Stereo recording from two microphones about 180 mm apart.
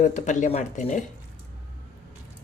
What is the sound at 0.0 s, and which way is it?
Speech, 40° left (ahead or behind).